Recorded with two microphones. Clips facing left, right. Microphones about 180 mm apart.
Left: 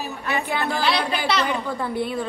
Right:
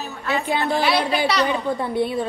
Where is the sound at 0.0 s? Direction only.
15° left (ahead or behind).